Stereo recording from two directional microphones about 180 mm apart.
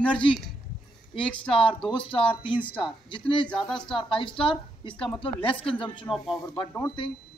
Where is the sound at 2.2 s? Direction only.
30° left (ahead or behind).